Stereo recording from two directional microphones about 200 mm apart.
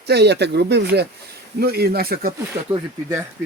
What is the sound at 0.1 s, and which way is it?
Speech, 55° right (ahead or behind).